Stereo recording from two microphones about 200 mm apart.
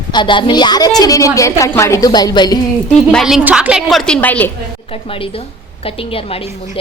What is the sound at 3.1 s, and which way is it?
A woman's voice, centre (ahead or behind).